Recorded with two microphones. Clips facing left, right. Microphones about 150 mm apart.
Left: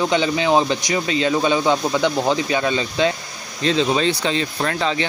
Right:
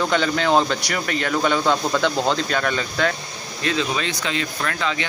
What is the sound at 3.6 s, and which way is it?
Speech, 30° left (ahead or behind).